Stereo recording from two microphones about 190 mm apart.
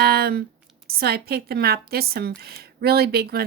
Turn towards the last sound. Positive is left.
turn(degrees=-55)  # may be behind; listen again after turning